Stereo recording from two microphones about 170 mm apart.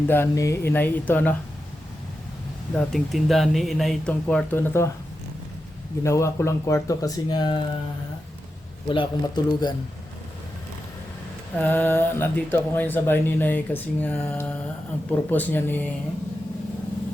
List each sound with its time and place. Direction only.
0.1 s speech: 15° left (ahead or behind)
2.7 s speech: centre (ahead or behind)
6.0 s speech: 15° left (ahead or behind)
8.9 s speech: 25° left (ahead or behind)
11.5 s speech: 10° left (ahead or behind)